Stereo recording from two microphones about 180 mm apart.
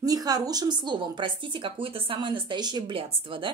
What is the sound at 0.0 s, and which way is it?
Speech, 20° right (ahead or behind).